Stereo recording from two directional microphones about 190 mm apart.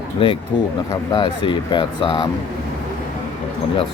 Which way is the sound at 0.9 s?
25° left (ahead or behind).